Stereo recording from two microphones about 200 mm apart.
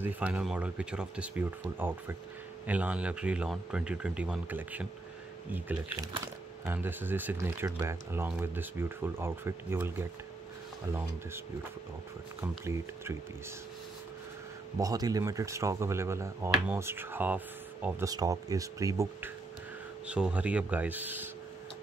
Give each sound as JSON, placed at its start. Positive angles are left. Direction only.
{"t": 0.0, "sound": "speech", "side_deg": -5}
{"t": 14.8, "sound": "speech", "side_deg": -15}